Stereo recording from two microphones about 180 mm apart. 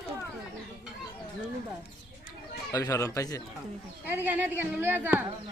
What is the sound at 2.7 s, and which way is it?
Speech, 20° left (ahead or behind).